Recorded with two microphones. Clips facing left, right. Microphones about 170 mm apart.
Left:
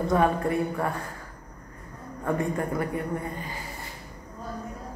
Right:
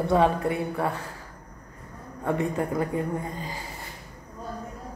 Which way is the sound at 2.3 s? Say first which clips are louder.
Right 1 dB; 20° right (ahead or behind).